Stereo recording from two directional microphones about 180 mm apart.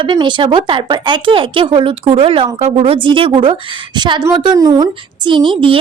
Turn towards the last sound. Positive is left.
turn(degrees=-30)  # may be behind; listen again after turning